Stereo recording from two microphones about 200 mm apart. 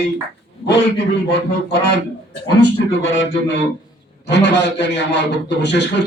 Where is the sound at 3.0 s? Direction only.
70° left (ahead or behind).